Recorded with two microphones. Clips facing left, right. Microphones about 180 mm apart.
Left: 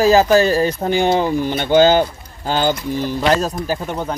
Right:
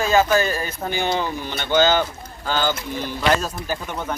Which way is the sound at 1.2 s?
45° left (ahead or behind).